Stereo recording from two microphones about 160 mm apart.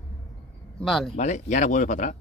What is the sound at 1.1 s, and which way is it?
Speech, 50° left (ahead or behind).